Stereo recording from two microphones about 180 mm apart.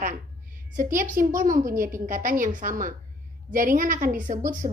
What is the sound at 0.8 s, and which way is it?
A woman's voice, 50° right (ahead or behind).